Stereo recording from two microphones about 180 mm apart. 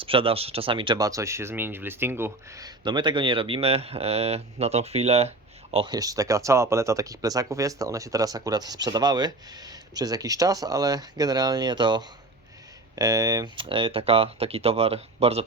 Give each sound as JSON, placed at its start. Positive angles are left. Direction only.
{"t": 0.0, "sound": "speech", "side_deg": -30}
{"t": 5.7, "sound": "speech", "side_deg": -25}